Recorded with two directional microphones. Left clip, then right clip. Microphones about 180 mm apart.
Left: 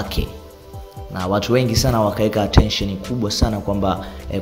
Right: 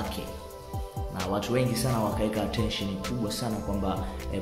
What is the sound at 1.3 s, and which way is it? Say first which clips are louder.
Speech: left 10 dB; 35° left (ahead or behind).